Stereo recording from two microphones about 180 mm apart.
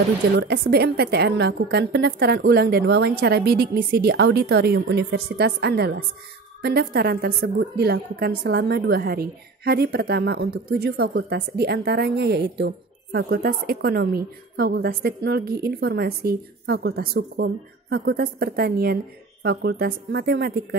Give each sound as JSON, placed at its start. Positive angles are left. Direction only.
{"t": 0.4, "sound": "a woman's voice", "side_deg": -65}